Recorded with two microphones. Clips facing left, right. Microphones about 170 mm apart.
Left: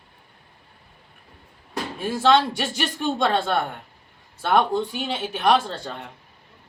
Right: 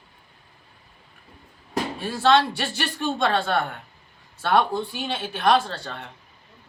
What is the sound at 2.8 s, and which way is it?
Speech, 20° left (ahead or behind).